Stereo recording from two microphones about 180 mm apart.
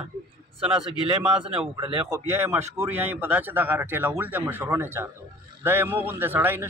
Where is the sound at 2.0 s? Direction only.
15° right (ahead or behind).